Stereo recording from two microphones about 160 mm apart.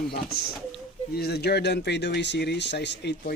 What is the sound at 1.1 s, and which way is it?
Speech, 85° left.